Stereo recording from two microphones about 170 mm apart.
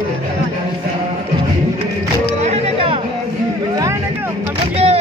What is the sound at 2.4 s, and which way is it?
Music, 35° right (ahead or behind).